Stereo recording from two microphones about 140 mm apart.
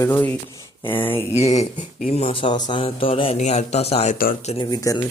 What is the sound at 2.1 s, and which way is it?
Speech, 40° left (ahead or behind).